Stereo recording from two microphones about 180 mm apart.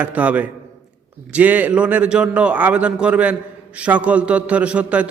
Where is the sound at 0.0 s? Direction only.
10° right (ahead or behind).